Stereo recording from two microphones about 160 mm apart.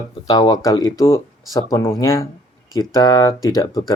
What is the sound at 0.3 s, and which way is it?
Speech, 25° left (ahead or behind).